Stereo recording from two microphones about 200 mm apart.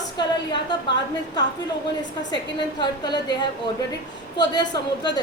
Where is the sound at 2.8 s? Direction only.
20° left (ahead or behind).